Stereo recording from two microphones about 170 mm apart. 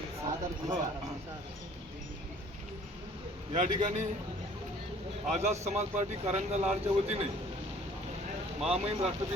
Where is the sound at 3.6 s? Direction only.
45° right (ahead or behind).